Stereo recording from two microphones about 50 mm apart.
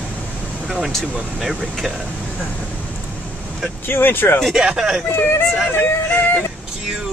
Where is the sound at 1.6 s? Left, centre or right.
Centre.